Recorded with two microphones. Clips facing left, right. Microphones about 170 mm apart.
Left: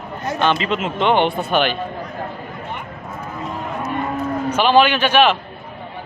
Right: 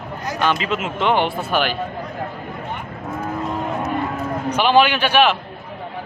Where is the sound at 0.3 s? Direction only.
25° left (ahead or behind).